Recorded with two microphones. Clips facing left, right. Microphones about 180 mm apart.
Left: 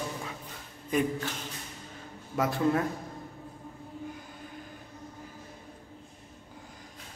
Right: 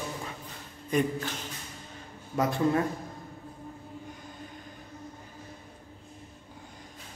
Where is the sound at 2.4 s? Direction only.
Centre (ahead or behind).